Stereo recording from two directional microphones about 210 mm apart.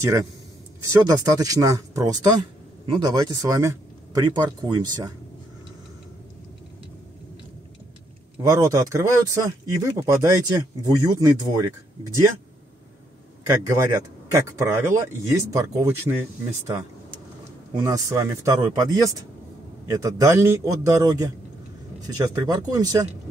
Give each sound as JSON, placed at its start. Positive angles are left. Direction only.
{"t": 0.0, "sound": "speech", "side_deg": -15}
{"t": 8.4, "sound": "speech", "side_deg": -15}
{"t": 13.5, "sound": "speech", "side_deg": -15}
{"t": 17.7, "sound": "speech", "side_deg": -15}